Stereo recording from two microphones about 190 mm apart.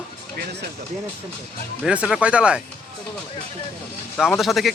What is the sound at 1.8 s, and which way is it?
Speech, 5° right (ahead or behind).